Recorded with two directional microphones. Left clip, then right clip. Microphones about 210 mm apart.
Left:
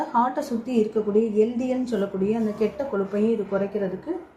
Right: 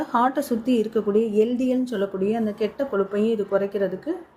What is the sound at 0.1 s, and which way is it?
Speech, 45° right (ahead or behind).